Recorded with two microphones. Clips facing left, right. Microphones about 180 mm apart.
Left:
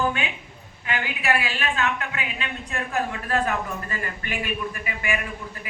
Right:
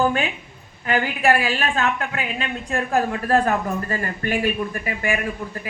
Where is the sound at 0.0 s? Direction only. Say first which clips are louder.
Right 5 dB; 40° right (ahead or behind).